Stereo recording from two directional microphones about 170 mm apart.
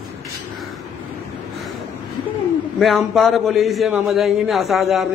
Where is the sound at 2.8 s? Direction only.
Centre (ahead or behind).